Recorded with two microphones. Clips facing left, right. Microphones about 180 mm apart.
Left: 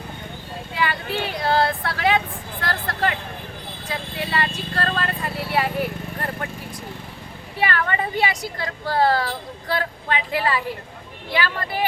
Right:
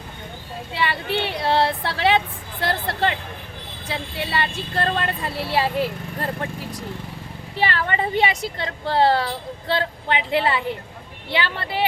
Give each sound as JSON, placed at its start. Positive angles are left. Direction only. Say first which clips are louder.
{"t": 0.7, "sound": "vehicle", "louder": "right 1 dB", "side_deg": -25}
{"t": 3.9, "sound": "speech", "louder": "even", "side_deg": -25}
{"t": 7.6, "sound": "a woman's voice", "louder": "even", "side_deg": -25}